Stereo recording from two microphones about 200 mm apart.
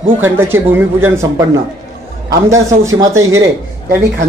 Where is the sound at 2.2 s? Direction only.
15° right (ahead or behind).